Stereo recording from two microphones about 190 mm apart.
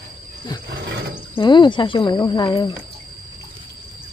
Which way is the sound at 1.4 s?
25° left (ahead or behind).